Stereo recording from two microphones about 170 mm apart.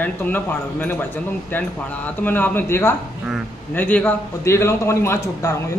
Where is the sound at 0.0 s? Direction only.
10° left (ahead or behind).